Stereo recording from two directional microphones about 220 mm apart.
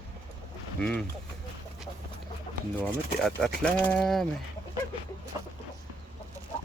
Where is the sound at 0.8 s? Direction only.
5° left (ahead or behind).